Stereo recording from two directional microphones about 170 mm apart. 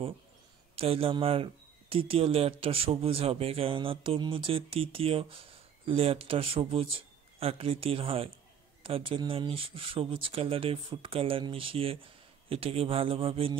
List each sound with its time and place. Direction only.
0.7 s speech: 35° right (ahead or behind)